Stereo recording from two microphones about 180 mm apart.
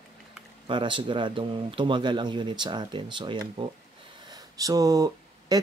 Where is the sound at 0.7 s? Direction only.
25° right (ahead or behind).